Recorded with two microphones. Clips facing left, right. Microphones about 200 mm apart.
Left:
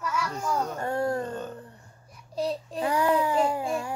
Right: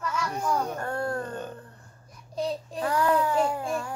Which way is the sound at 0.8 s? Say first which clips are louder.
Left 3 dB; 15° left (ahead or behind).